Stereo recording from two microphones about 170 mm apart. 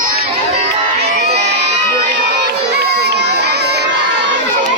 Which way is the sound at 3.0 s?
80° right.